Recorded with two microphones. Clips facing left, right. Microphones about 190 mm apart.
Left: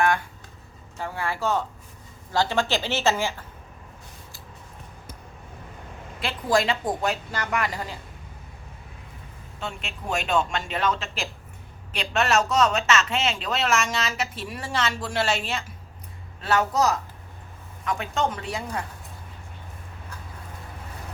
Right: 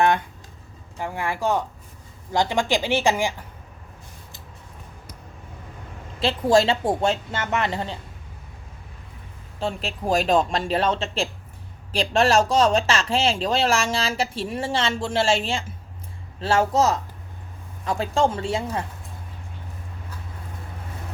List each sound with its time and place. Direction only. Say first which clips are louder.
0.0 s a sound: right 3 dB; 20° right (ahead or behind)
0.9 s a woman's voice: right 2 dB; 15° right (ahead or behind)
6.1 s a woman's voice: right 5 dB; 25° right (ahead or behind)
9.6 s a woman's voice: right 7 dB; 35° right (ahead or behind)